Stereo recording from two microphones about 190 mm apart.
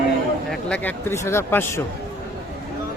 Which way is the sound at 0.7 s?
10° left (ahead or behind).